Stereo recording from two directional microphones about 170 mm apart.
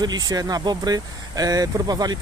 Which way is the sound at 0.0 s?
25° right (ahead or behind).